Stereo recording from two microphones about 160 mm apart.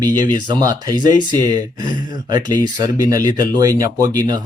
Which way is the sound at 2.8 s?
20° right (ahead or behind).